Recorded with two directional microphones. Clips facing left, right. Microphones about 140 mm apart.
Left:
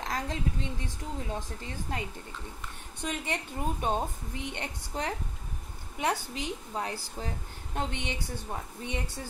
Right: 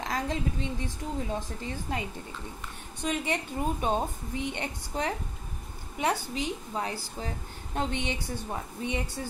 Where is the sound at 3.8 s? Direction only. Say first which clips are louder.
Right 2 dB; 10° right (ahead or behind).